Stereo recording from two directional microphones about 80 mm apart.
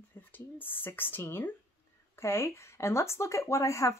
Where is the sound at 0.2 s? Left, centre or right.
Left.